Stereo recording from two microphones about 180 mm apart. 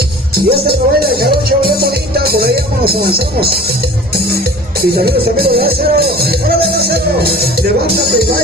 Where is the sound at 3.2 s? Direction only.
60° right (ahead or behind).